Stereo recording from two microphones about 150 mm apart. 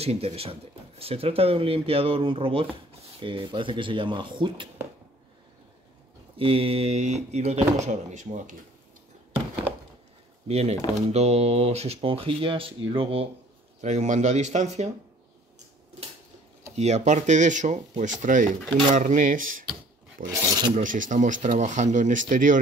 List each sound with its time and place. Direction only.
0.0 s speech: 40° right (ahead or behind)
6.3 s speech: 40° right (ahead or behind); by 8.5 s 55° right (ahead or behind)
10.5 s speech: 45° right (ahead or behind)
13.7 s speech: 50° right (ahead or behind)
16.7 s speech: 45° right (ahead or behind)
20.2 s filing: 30° right (ahead or behind)
20.7 s speech: 60° right (ahead or behind)